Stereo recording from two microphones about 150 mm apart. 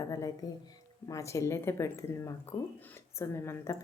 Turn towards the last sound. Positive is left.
turn(degrees=15)  # may be behind; listen again after turning